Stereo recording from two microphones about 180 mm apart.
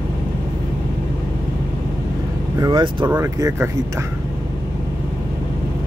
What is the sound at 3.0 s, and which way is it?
Speech, 15° right (ahead or behind).